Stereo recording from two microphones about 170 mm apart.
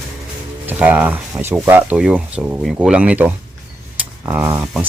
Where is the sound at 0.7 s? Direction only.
10° right (ahead or behind).